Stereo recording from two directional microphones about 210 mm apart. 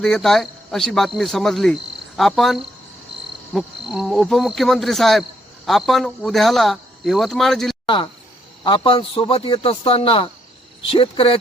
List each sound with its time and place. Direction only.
0.0 s speech: centre (ahead or behind)
7.9 s a man's voice: 25° left (ahead or behind)